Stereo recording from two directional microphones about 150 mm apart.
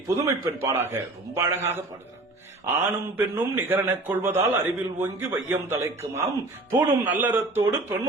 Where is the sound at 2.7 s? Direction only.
15° right (ahead or behind).